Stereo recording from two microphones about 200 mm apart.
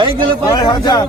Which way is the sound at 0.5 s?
20° left (ahead or behind).